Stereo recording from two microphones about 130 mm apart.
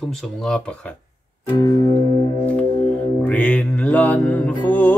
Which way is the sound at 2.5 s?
10° left (ahead or behind).